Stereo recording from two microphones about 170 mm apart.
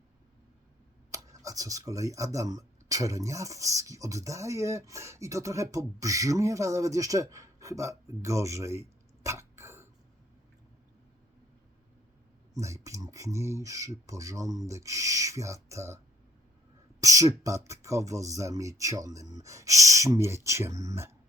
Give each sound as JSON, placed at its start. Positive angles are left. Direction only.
{"t": 1.1, "sound": "speech", "side_deg": -20}
{"t": 8.2, "sound": "throat clearing", "side_deg": -20}
{"t": 12.5, "sound": "speech", "side_deg": -20}
{"t": 17.0, "sound": "speech", "side_deg": -20}